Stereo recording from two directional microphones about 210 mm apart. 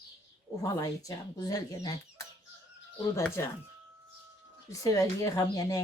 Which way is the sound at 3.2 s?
10° left (ahead or behind).